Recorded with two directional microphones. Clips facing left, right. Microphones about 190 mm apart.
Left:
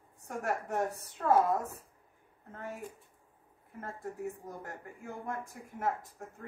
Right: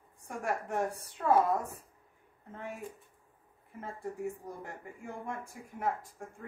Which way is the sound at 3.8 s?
Centre (ahead or behind).